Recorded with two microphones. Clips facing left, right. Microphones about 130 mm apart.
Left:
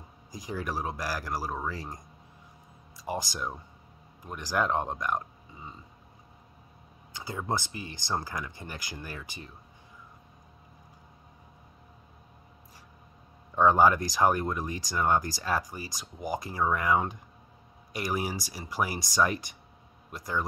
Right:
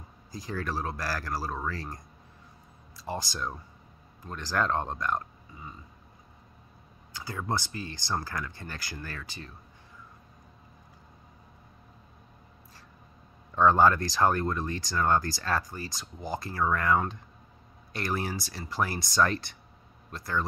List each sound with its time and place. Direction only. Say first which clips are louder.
0.3 s speech: even; 15° left (ahead or behind)
3.0 s speech: left 1 dB; 15° left (ahead or behind)
7.2 s speech: even; 20° left (ahead or behind)
13.6 s speech: even; 15° left (ahead or behind)